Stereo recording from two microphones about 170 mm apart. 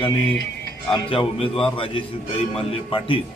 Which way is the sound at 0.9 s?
30° left (ahead or behind).